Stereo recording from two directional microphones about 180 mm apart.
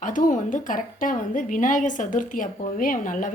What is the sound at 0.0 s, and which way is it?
A woman's voice, 45° left (ahead or behind).